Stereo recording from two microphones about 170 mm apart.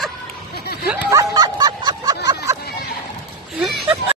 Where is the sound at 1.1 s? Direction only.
20° right (ahead or behind).